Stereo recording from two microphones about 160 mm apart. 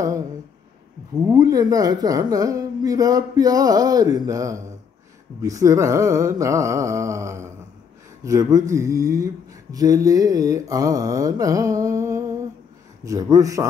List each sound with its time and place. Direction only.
1.2 s speech: 20° right (ahead or behind)